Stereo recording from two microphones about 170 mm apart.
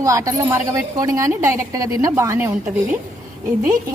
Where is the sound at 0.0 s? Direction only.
20° right (ahead or behind).